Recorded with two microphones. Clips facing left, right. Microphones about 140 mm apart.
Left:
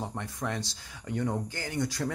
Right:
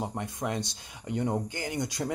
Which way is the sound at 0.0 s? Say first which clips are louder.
Right 2 dB; 20° right (ahead or behind).